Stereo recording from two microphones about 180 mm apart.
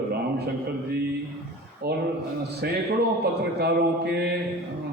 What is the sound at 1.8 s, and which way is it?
A man's voice, 60° right (ahead or behind).